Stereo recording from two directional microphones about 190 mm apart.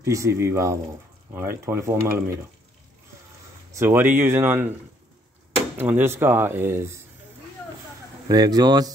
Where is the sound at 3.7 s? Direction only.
15° right (ahead or behind).